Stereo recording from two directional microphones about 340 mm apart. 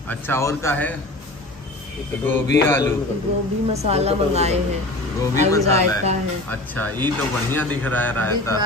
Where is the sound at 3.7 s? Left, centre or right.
Centre.